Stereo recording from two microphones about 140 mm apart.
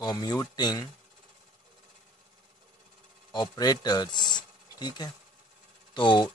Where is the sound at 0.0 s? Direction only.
25° left (ahead or behind).